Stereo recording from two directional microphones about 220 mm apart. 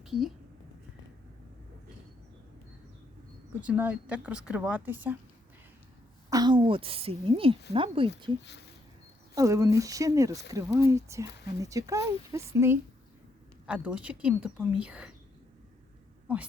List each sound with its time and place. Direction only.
0.0 s speech: centre (ahead or behind)
3.6 s speech: 5° right (ahead or behind)
6.3 s a woman's voice: 20° right (ahead or behind)
9.3 s speech: 15° right (ahead or behind)